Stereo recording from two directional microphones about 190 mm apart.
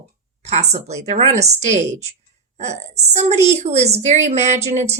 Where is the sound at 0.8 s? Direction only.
35° right (ahead or behind).